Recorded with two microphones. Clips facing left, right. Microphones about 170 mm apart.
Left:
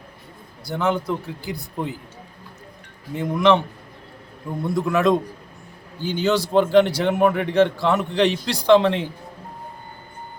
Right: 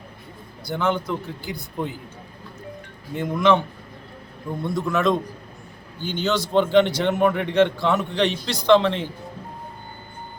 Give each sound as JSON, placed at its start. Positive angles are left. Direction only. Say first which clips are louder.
{"t": 0.7, "sound": "speech", "louder": "left 1 dB", "side_deg": 0}
{"t": 1.0, "sound": "speech", "louder": "left 2 dB", "side_deg": 35}
{"t": 3.2, "sound": "speech", "louder": "left 1 dB", "side_deg": -5}
{"t": 4.5, "sound": "a man's voice", "louder": "left 2 dB", "side_deg": 10}